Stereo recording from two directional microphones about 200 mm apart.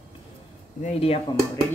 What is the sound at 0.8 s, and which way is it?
Speech, 30° left (ahead or behind).